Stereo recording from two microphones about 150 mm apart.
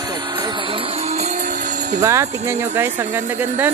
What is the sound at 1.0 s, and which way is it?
Music, 45° right (ahead or behind).